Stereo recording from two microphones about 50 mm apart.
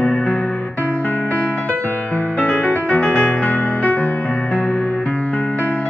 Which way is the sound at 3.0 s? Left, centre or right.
Left.